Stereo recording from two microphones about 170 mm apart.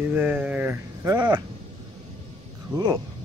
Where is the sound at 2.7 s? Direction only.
25° right (ahead or behind).